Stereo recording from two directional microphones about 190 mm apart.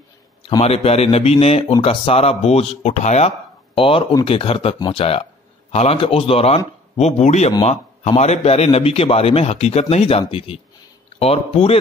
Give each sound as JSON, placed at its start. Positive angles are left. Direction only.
{"t": 0.5, "sound": "a man's voice", "side_deg": 30}